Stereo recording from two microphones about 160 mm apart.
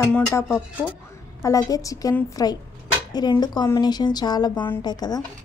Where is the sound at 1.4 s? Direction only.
20° left (ahead or behind).